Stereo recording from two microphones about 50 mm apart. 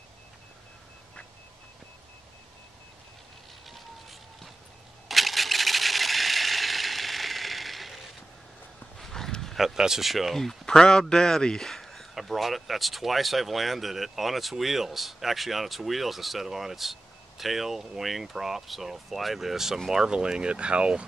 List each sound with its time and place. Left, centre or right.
3.6 s vehicle: centre
5.0 s a sound: centre
8.9 s horse: centre
9.8 s speech: centre